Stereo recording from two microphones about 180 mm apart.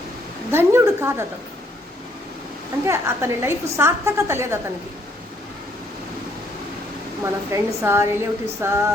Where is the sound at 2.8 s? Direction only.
15° right (ahead or behind).